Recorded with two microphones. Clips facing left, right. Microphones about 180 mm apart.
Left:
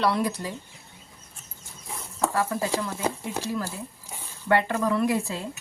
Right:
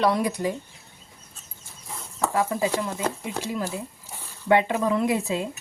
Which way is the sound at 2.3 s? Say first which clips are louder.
Right 4 dB; 15° right (ahead or behind).